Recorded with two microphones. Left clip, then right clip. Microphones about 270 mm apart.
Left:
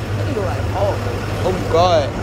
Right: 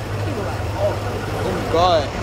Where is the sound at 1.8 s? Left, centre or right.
Centre.